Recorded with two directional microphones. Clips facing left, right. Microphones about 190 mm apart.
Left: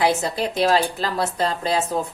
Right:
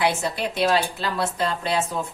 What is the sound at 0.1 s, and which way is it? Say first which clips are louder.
Speech: left 4 dB; 40° left (ahead or behind).